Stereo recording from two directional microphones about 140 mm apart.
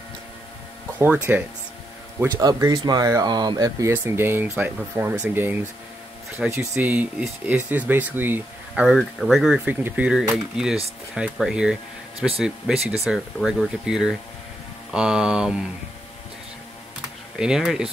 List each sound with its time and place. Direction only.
0.9 s speech: 15° right (ahead or behind)
2.4 s speech: 30° right (ahead or behind)
3.9 s speech: 15° right (ahead or behind)
8.8 s speech: centre (ahead or behind)
17.4 s speech: 5° right (ahead or behind)